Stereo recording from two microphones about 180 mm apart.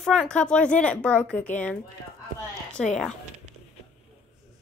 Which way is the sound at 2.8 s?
5° left (ahead or behind).